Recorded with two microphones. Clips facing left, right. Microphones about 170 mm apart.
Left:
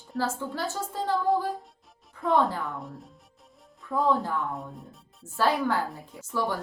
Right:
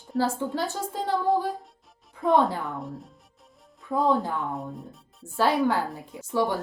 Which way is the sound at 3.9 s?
20° right (ahead or behind).